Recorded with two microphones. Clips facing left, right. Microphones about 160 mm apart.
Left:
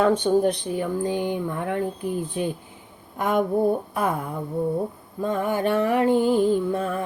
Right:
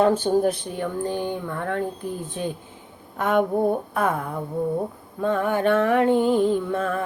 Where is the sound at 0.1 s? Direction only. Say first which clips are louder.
Left 1 dB; 5° right (ahead or behind).